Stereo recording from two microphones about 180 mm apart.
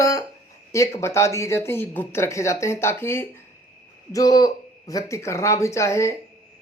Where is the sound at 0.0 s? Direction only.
20° left (ahead or behind).